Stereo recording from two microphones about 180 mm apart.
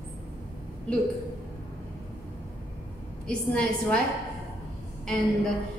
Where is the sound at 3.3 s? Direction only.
5° left (ahead or behind).